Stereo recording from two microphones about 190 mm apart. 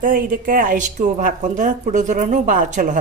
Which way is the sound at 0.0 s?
45° right (ahead or behind).